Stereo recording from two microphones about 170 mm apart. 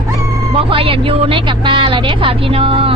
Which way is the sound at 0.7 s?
30° right (ahead or behind).